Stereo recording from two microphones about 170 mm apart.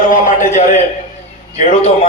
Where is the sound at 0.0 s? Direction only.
50° left (ahead or behind).